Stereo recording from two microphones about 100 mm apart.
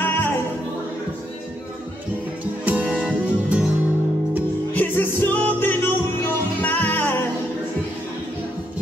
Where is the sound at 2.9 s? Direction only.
5° right (ahead or behind).